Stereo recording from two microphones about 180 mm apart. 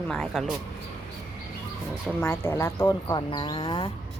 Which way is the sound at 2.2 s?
10° left (ahead or behind).